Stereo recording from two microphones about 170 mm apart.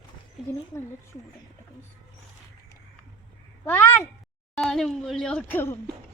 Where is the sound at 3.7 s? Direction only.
10° left (ahead or behind).